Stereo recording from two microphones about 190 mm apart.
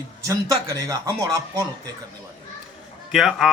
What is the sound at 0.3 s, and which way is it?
Speech, 20° right (ahead or behind).